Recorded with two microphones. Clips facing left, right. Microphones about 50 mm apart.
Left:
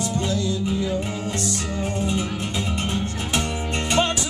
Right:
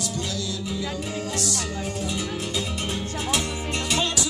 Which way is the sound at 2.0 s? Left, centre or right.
Left.